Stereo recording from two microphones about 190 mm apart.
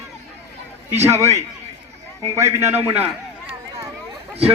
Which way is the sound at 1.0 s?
15° right (ahead or behind).